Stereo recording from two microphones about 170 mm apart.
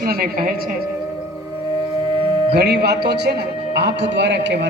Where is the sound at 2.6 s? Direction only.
75° right (ahead or behind).